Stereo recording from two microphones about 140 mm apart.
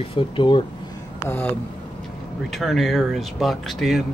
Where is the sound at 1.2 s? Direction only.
15° left (ahead or behind).